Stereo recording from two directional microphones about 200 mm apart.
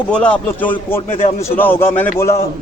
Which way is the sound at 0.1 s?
5° left (ahead or behind).